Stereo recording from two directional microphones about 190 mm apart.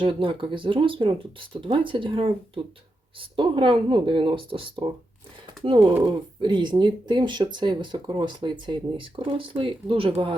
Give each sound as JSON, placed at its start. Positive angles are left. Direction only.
{"t": 0.0, "sound": "speech", "side_deg": -25}